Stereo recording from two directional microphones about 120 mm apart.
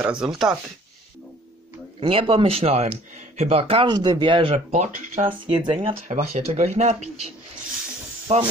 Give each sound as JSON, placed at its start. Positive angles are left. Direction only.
{"t": 0.0, "sound": "speech", "side_deg": -5}
{"t": 2.0, "sound": "speech", "side_deg": -50}
{"t": 3.9, "sound": "speech", "side_deg": -35}
{"t": 4.7, "sound": "speech", "side_deg": -85}
{"t": 5.6, "sound": "speech", "side_deg": -45}
{"t": 6.0, "sound": "speech", "side_deg": -80}